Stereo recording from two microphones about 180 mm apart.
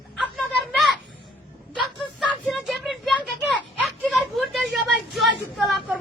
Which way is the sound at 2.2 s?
5° left (ahead or behind).